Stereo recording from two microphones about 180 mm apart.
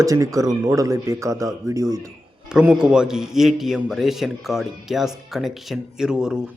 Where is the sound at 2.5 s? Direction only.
5° right (ahead or behind).